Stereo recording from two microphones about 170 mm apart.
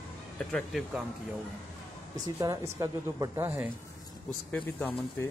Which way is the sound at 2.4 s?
20° right (ahead or behind).